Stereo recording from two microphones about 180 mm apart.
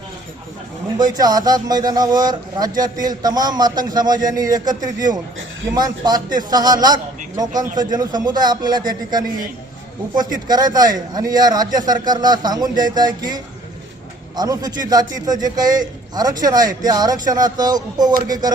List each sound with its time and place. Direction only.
0.9 s a man's voice: 20° right (ahead or behind)
10.3 s a man's voice: 20° right (ahead or behind)